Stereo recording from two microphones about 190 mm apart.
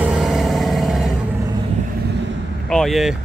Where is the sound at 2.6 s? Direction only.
Centre (ahead or behind).